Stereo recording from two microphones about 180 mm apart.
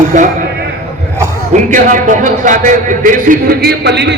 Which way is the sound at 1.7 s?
45° right (ahead or behind).